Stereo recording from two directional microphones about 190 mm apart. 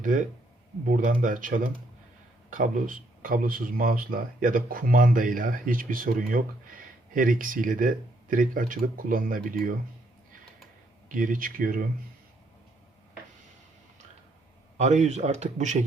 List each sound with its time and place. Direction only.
0.0 s speech: 45° right (ahead or behind)
11.1 s speech: 45° right (ahead or behind)
14.8 s speech: 35° right (ahead or behind)